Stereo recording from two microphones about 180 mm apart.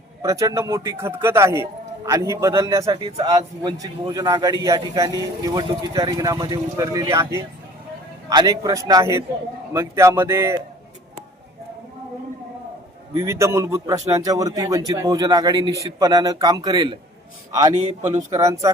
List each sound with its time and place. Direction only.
0.2 s a man's voice: 15° right (ahead or behind)
13.1 s a man's voice: 15° right (ahead or behind)
18.0 s speech: 40° right (ahead or behind)
18.3 s a man's voice: 20° right (ahead or behind)